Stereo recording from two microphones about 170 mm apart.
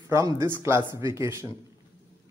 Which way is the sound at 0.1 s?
20° right (ahead or behind).